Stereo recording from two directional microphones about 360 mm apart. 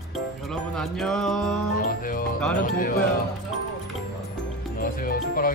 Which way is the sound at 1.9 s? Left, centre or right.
Left.